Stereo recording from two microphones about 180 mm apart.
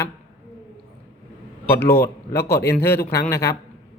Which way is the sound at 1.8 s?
60° left (ahead or behind).